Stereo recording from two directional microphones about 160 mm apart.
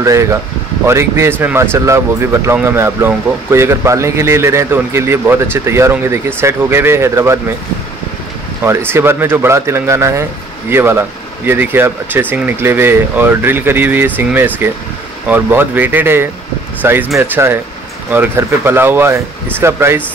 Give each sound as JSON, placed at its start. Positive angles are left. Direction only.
{"t": 0.0, "sound": "speech", "side_deg": -20}
{"t": 8.6, "sound": "speech", "side_deg": -15}